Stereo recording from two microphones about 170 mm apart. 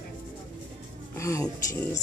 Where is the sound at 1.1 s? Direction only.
15° left (ahead or behind).